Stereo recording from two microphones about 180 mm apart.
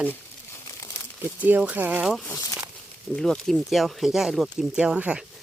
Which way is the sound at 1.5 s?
10° right (ahead or behind).